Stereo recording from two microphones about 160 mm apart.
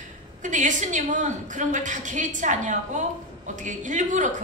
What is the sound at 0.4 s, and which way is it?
A woman's voice, 50° right (ahead or behind).